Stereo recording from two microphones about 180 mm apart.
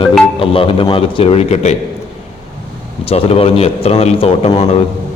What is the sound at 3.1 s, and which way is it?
A man's voice, 30° left (ahead or behind).